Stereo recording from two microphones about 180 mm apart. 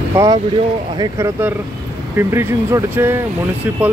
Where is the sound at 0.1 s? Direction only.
15° right (ahead or behind).